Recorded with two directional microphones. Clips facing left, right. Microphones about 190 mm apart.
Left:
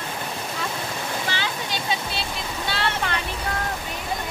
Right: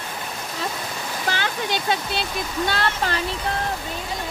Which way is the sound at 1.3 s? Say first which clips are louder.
Right 3 dB; 55° right (ahead or behind).